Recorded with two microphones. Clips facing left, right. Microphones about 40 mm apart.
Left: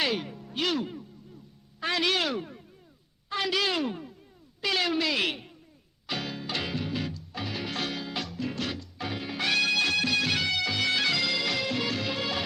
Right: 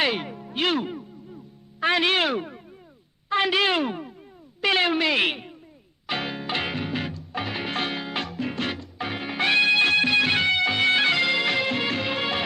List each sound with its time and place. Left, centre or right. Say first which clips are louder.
0.0 s music: right 4 dB; right
1.8 s speech: right 6 dB; right
6.1 s music: right 5 dB; right